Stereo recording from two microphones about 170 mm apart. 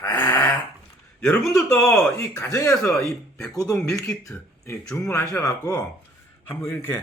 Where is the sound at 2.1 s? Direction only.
15° left (ahead or behind).